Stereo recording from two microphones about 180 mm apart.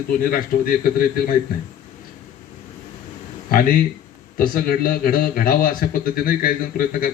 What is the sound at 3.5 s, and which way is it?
A man's voice, 55° left (ahead or behind).